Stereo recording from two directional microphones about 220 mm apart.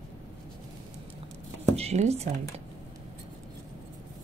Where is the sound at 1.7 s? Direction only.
30° right (ahead or behind).